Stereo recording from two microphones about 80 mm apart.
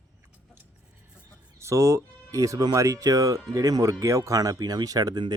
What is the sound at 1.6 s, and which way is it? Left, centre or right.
Speech, right.